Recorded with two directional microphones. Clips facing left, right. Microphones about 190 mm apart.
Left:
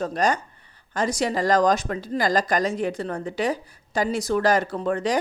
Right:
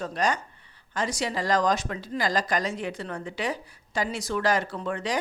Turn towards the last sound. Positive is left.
turn(degrees=40)  # may be behind; listen again after turning